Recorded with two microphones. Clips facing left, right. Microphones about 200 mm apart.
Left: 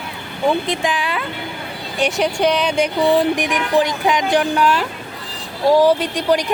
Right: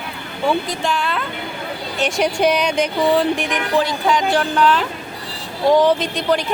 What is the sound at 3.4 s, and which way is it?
Music, 15° left (ahead or behind).